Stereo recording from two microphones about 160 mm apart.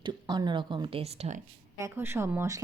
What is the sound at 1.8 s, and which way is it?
Speech, 15° right (ahead or behind).